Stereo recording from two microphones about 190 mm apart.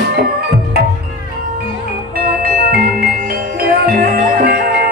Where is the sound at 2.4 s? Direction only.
50° right (ahead or behind).